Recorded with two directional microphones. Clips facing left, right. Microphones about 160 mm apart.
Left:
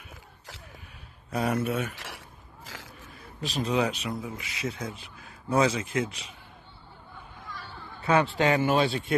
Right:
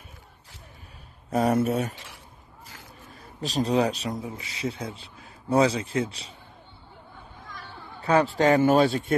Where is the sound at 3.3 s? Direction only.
35° right (ahead or behind).